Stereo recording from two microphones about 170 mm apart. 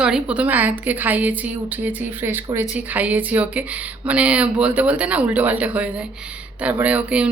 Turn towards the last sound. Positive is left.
turn(degrees=-10)  # may be behind; listen again after turning